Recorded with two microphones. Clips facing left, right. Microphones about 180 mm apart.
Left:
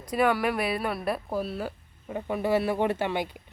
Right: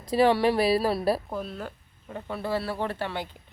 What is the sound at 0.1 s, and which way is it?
Speech, 30° right (ahead or behind).